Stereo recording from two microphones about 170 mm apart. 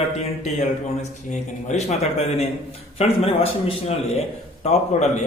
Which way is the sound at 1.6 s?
40° left (ahead or behind).